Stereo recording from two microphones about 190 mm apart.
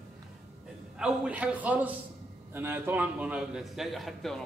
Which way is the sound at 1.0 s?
5° right (ahead or behind).